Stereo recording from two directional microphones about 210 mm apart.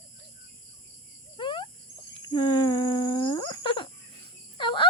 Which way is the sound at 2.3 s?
20° left (ahead or behind).